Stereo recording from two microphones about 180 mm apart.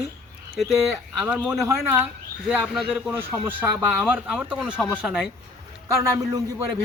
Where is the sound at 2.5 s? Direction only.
10° right (ahead or behind).